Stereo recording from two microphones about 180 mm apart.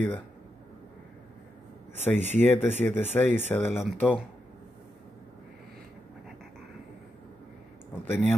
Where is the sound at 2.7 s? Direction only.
40° right (ahead or behind).